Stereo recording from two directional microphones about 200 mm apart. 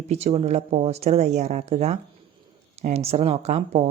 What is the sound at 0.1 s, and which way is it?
Speech, 30° right (ahead or behind).